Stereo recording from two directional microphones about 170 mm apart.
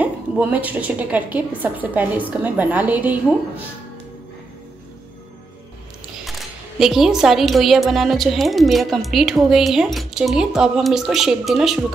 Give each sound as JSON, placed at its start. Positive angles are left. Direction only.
{"t": 0.0, "sound": "a woman's voice", "side_deg": -10}
{"t": 6.2, "sound": "a woman's voice", "side_deg": 0}